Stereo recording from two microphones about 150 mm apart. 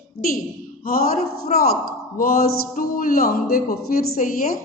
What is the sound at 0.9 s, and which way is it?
A woman's voice, 75° left (ahead or behind).